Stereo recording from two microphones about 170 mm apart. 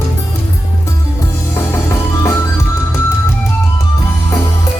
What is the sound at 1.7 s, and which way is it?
Music, 15° left (ahead or behind).